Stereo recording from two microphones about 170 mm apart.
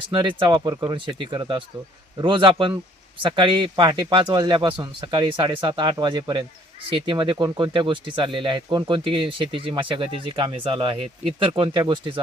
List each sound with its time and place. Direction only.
0.1 s speech: 30° right (ahead or behind)